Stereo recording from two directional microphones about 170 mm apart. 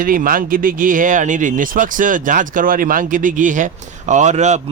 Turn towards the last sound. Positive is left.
turn(degrees=-45)  # may be behind; listen again after turning